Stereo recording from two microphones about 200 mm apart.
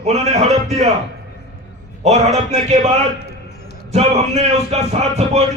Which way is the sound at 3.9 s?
35° right (ahead or behind).